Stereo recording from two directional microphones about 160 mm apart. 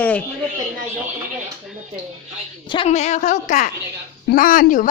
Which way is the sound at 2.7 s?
40° left (ahead or behind).